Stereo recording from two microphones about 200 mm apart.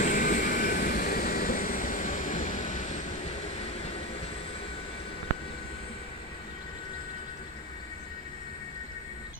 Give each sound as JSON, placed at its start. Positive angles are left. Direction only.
{"t": 0.0, "sound": "vehicle", "side_deg": 40}